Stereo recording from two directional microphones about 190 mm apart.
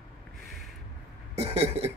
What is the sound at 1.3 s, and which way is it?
Cough, 35° right (ahead or behind).